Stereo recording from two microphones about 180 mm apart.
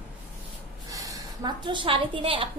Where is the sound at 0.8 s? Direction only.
20° right (ahead or behind).